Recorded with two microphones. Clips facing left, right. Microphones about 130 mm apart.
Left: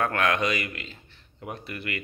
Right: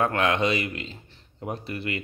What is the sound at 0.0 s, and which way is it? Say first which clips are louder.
Speech: right 2 dB; 25° right (ahead or behind).